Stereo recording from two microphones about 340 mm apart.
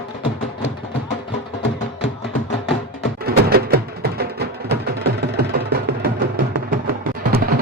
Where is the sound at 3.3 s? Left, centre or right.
Right.